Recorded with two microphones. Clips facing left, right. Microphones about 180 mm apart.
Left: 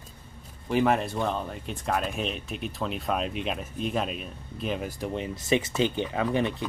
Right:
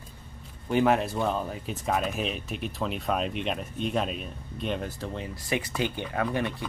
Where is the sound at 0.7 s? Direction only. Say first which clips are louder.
Right 1 dB; centre (ahead or behind).